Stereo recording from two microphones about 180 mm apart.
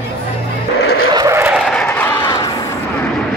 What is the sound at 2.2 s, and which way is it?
Battle cry, 25° left (ahead or behind).